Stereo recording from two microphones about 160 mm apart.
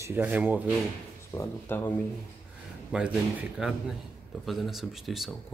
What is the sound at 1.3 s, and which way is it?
Speech, 15° left (ahead or behind).